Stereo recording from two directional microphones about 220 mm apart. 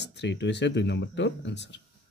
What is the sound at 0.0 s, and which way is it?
Speech, 55° left (ahead or behind).